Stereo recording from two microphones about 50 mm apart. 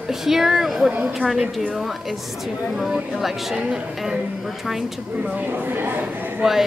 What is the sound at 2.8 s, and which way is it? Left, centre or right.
Speech, centre.